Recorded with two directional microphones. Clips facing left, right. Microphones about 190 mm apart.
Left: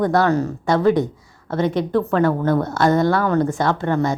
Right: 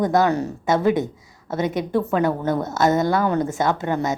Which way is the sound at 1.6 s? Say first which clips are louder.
Left 2 dB; 5° right (ahead or behind).